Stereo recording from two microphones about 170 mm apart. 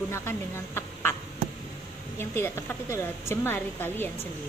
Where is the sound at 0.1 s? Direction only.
15° left (ahead or behind).